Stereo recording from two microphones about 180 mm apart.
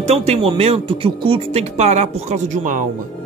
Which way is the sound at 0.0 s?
40° right (ahead or behind).